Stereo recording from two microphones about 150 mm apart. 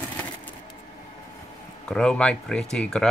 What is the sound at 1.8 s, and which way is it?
Speech, 5° left (ahead or behind).